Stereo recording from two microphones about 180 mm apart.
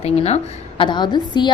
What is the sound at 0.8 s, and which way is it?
Speech, 25° left (ahead or behind).